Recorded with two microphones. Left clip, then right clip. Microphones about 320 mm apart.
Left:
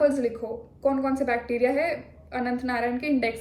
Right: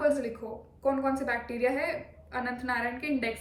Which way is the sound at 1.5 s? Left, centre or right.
Centre.